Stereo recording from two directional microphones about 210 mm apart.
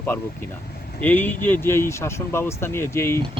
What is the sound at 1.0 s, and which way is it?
Speech, 10° left (ahead or behind).